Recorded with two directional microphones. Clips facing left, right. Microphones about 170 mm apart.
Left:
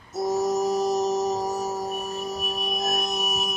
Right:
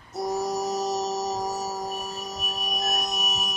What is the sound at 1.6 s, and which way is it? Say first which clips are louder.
Music: left 3 dB; centre (ahead or behind).